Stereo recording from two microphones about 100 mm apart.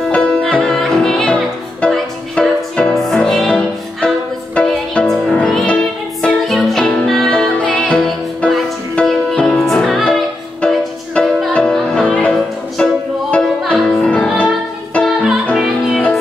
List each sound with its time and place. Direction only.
0.1 s music: 10° left (ahead or behind)
15.5 s music: centre (ahead or behind)